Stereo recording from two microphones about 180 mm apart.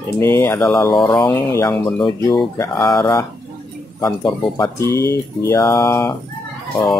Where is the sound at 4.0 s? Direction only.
25° left (ahead or behind).